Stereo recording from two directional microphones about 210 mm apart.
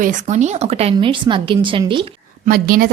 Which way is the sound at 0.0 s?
35° right (ahead or behind).